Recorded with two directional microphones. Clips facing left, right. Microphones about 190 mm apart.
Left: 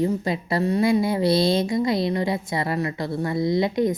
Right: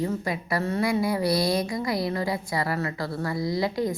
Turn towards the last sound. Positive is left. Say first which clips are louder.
# left 5 dB
turn(degrees=20)  # may be behind; listen again after turning